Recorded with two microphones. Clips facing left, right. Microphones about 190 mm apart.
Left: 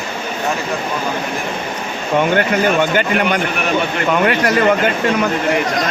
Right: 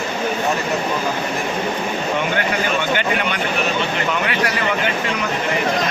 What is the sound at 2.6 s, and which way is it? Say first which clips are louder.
A man's voice: left 5 dB; 50° left (ahead or behind).